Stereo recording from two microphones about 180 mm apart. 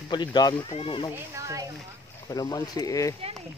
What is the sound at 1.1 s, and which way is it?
Speech, 15° right (ahead or behind).